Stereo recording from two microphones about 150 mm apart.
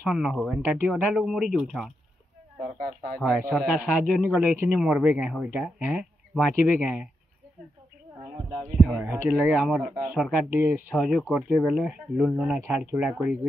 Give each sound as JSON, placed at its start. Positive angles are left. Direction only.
{"t": 0.1, "sound": "speech", "side_deg": -5}
{"t": 8.2, "sound": "a sound", "side_deg": -25}
{"t": 9.0, "sound": "speech", "side_deg": -15}
{"t": 11.0, "sound": "speech", "side_deg": 0}